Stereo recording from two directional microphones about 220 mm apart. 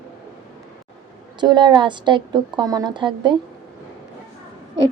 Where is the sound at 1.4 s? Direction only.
20° right (ahead or behind).